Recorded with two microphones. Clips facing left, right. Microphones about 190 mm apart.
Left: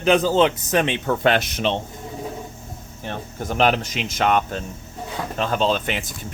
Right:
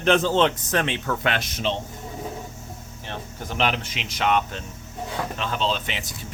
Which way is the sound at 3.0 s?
50° left (ahead or behind).